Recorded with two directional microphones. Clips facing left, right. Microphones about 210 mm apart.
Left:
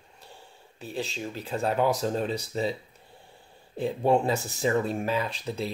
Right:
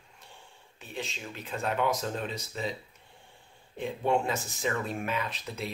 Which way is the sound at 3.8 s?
35° left (ahead or behind).